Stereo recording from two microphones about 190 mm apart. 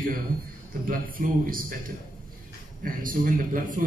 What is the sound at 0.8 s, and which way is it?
Speech, 45° right (ahead or behind).